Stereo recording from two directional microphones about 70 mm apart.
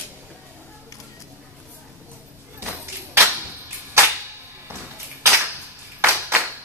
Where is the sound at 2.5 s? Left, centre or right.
Right.